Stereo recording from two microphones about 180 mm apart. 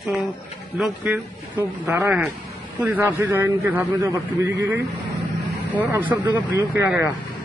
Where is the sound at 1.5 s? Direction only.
10° right (ahead or behind).